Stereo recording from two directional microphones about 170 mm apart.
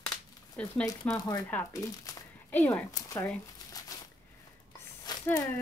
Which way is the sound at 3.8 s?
20° left (ahead or behind).